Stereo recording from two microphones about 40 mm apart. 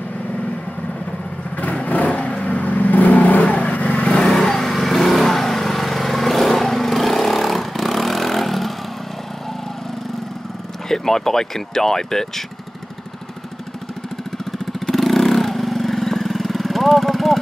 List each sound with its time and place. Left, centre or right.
1.6 s vehicle: left
4.2 s vehicle: centre
10.9 s speech: centre
14.9 s vehicle: centre